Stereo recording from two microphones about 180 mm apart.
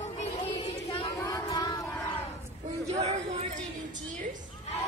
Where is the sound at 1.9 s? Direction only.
5° left (ahead or behind).